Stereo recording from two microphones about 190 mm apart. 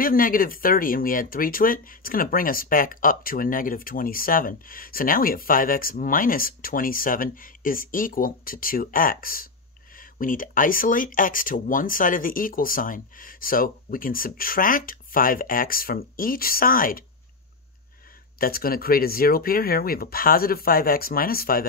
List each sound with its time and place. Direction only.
0.0 s speech: 50° left (ahead or behind)
18.4 s speech: 50° left (ahead or behind)